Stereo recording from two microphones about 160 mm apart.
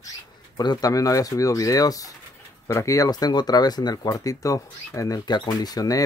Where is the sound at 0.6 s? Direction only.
25° left (ahead or behind).